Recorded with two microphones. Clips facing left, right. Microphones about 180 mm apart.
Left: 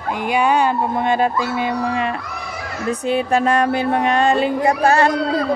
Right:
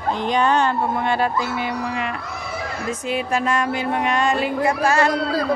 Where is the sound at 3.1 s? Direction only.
35° left (ahead or behind).